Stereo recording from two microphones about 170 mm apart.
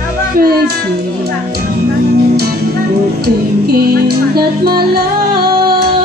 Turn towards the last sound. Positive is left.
turn(degrees=-65)  # may be behind; listen again after turning